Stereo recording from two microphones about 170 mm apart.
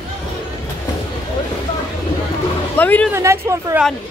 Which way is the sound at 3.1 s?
15° right (ahead or behind).